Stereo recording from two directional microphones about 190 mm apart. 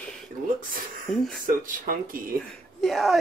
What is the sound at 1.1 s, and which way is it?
Speech, 5° left (ahead or behind).